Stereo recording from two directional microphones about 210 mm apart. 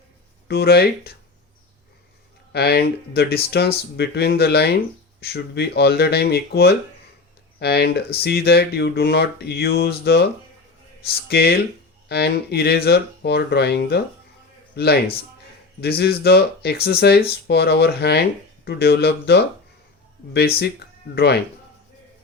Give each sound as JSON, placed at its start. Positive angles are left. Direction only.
{"t": 0.4, "sound": "speech", "side_deg": 50}
{"t": 2.5, "sound": "speech", "side_deg": 50}